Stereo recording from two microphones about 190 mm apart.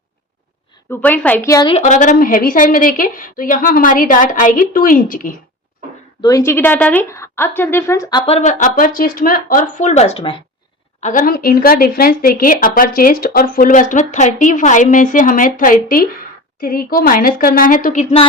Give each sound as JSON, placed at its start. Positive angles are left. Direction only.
{"t": 0.9, "sound": "a woman's voice", "side_deg": 10}
{"t": 1.7, "sound": "speech", "side_deg": 40}
{"t": 6.2, "sound": "a woman's voice", "side_deg": 15}
{"t": 8.3, "sound": "speech", "side_deg": 40}
{"t": 11.0, "sound": "speech", "side_deg": 45}